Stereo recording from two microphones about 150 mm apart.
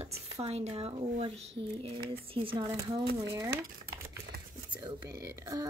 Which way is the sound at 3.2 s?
20° right (ahead or behind).